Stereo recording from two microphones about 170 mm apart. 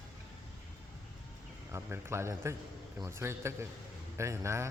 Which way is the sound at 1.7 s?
15° right (ahead or behind).